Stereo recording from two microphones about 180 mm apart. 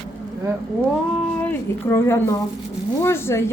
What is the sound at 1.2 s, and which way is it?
A woman's voice, 10° left (ahead or behind).